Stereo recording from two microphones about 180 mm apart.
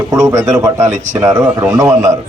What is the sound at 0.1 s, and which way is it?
Speech, 20° right (ahead or behind).